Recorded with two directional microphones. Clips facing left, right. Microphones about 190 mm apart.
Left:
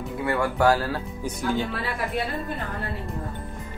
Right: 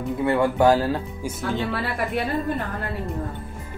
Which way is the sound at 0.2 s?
20° right (ahead or behind).